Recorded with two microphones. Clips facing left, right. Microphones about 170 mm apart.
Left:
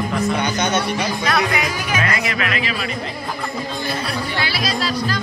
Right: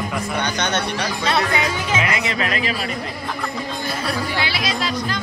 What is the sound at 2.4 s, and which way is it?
Speech, 40° right (ahead or behind).